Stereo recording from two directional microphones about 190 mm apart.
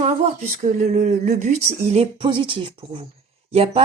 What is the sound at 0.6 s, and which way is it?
A woman's voice, 40° right (ahead or behind).